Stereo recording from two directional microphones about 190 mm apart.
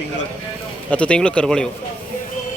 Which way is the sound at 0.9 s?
5° left (ahead or behind).